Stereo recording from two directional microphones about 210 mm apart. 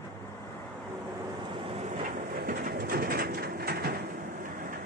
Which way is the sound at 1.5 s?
35° right (ahead or behind).